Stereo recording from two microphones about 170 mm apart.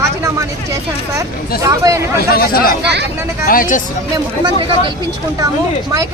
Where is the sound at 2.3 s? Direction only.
60° left (ahead or behind).